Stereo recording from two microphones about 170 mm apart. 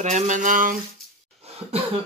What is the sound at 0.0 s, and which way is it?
Speech, 45° right (ahead or behind).